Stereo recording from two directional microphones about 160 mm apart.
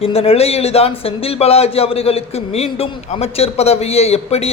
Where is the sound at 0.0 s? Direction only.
35° left (ahead or behind).